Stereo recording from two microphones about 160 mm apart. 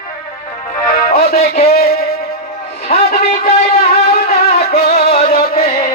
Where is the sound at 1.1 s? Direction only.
70° left (ahead or behind).